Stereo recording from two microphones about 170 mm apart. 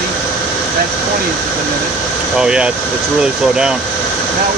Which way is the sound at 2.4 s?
5° right (ahead or behind).